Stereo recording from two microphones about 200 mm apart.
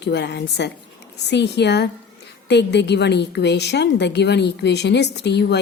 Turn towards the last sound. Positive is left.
turn(degrees=60)  # may be behind; listen again after turning